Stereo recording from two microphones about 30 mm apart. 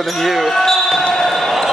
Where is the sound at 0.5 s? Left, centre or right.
Centre.